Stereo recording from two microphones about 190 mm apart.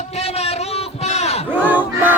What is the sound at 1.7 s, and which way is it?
Battle cry, 10° right (ahead or behind).